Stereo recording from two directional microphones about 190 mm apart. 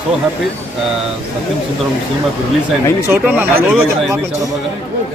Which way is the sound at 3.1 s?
10° right (ahead or behind).